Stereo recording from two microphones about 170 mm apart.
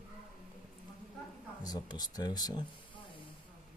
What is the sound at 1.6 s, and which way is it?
Speech, 25° left (ahead or behind).